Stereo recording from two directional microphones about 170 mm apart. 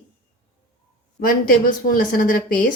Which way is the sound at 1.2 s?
55° left (ahead or behind).